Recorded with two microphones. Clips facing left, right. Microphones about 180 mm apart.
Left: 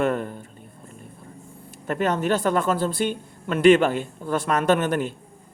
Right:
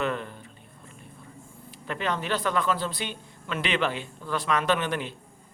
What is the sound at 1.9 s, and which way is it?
Speech, 45° left (ahead or behind).